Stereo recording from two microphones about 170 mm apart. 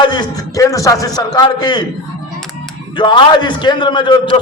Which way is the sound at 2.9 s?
30° left (ahead or behind).